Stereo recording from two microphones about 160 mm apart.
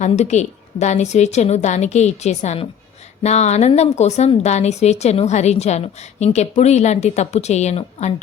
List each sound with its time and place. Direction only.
0.0 s speech: 45° left (ahead or behind)